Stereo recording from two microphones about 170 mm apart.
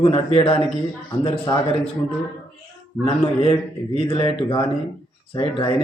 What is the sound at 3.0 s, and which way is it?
A man's voice, 35° left (ahead or behind).